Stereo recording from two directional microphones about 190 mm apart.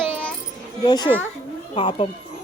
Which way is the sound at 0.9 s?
20° left (ahead or behind).